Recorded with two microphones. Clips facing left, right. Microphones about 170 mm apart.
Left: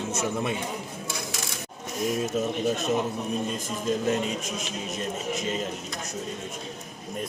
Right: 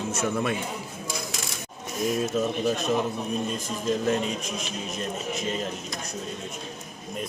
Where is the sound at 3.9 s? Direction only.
35° right (ahead or behind).